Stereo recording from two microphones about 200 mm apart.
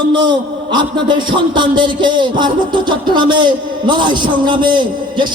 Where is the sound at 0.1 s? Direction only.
25° right (ahead or behind).